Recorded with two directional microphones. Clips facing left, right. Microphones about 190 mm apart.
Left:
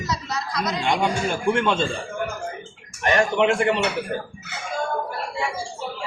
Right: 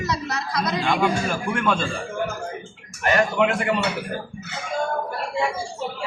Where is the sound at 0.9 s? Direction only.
25° left (ahead or behind).